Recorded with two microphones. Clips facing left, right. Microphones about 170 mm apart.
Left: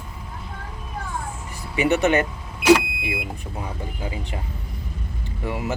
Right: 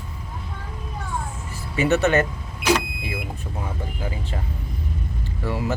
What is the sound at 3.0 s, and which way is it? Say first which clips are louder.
Smoke detector: left 2 dB; 15° left (ahead or behind).